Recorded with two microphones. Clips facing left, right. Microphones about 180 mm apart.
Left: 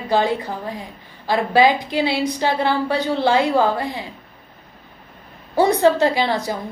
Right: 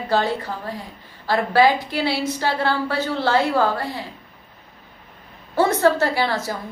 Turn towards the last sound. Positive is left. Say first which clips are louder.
# left 3 dB
turn(degrees=15)  # may be behind; listen again after turning